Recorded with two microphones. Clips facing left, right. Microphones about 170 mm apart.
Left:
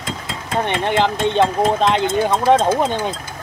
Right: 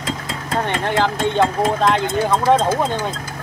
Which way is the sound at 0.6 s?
20° left (ahead or behind).